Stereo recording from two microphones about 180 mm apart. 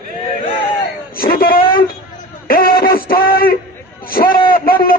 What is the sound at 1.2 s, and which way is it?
A man's voice, 55° left (ahead or behind).